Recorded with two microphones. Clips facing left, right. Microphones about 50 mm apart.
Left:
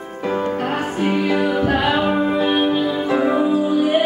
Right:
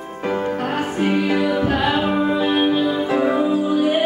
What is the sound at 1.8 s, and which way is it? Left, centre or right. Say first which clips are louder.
Music: left 1 dB; centre.